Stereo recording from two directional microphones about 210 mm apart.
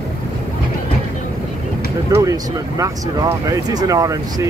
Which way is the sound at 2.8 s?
15° right (ahead or behind).